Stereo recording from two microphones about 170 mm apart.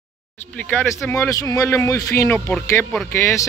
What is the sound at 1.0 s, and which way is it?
Speech, 15° left (ahead or behind).